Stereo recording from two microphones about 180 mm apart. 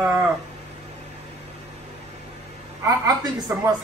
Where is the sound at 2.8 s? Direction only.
20° right (ahead or behind).